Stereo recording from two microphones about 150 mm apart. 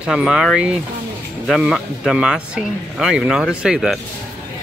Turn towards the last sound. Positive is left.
turn(degrees=-5)  # may be behind; listen again after turning